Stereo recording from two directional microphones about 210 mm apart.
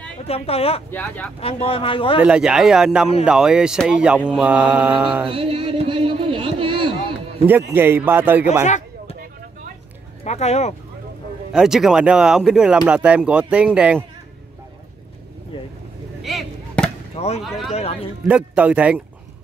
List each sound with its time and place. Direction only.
0.2 s speech: 30° left (ahead or behind)
0.9 s speech: 10° left (ahead or behind)
1.4 s speech: 25° left (ahead or behind)
2.1 s speech: 5° right (ahead or behind)
5.3 s speech: 25° right (ahead or behind)
7.4 s a man's voice: 10° right (ahead or behind)
8.6 s a sound: 35° left (ahead or behind)
10.2 s speech: 30° left (ahead or behind)
11.5 s speech: centre (ahead or behind)
16.2 s chop: centre (ahead or behind)
17.1 s chop: 30° left (ahead or behind)
17.4 s speech: centre (ahead or behind)